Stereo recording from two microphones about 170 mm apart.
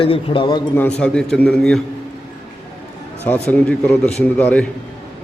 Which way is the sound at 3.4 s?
5° left (ahead or behind).